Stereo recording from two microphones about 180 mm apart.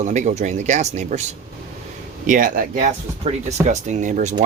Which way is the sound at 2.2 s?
45° right (ahead or behind).